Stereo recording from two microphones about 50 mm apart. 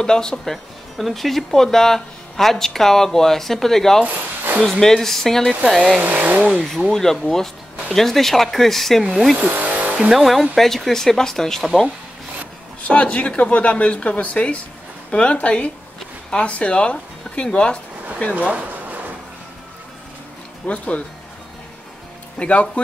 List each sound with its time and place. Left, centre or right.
0.0 s speech: centre
0.9 s speech: centre
4.0 s speech: right
4.6 s speech: centre
6.0 s speech: right
6.9 s speech: centre
9.5 s vehicle: right
10.1 s speech: centre
12.8 s speech: left
18.3 s speech: right
20.6 s speech: left
22.4 s speech: left